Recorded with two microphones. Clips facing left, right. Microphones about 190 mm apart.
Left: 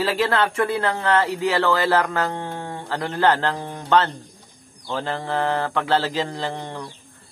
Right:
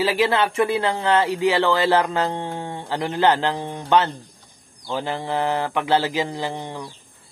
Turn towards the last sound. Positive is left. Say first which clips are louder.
# even
turn(degrees=-15)  # may be behind; listen again after turning